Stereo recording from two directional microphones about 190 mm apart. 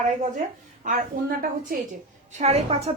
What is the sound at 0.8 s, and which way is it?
Speech, 45° right (ahead or behind).